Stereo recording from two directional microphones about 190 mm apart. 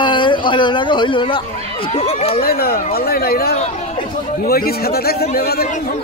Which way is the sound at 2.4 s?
55° left (ahead or behind).